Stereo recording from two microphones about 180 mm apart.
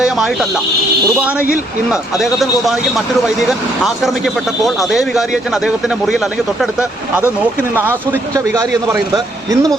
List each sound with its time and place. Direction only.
0.0 s speech: 5° right (ahead or behind)
1.9 s speech: centre (ahead or behind)
4.6 s speech: centre (ahead or behind)
8.5 s speech: 15° right (ahead or behind)